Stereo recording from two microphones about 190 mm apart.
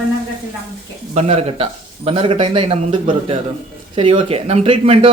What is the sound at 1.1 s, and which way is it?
A man's voice, 35° right (ahead or behind).